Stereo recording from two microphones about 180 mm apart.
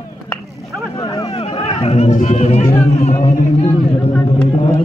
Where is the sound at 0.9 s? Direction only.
20° left (ahead or behind).